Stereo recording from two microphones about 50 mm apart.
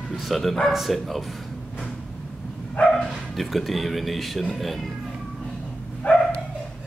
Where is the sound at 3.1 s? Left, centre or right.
Centre.